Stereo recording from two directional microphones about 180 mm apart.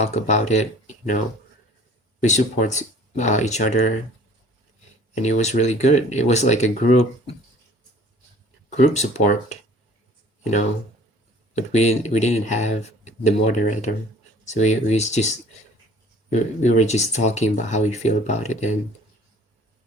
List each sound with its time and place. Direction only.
0.0 s speech: 40° left (ahead or behind)
2.2 s speech: 40° left (ahead or behind)
5.2 s speech: 40° left (ahead or behind)
8.7 s speech: 40° left (ahead or behind)
11.5 s speech: 40° left (ahead or behind)
16.6 s speech: 40° left (ahead or behind)